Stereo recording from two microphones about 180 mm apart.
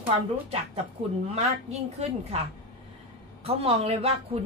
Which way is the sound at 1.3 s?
35° right (ahead or behind).